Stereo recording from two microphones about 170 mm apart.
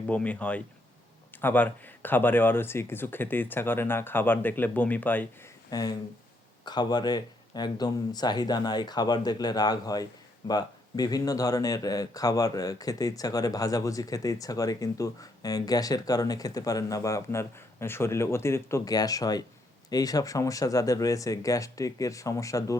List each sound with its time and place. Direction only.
0.1 s speech: 10° left (ahead or behind)
5.7 s speech: 20° left (ahead or behind)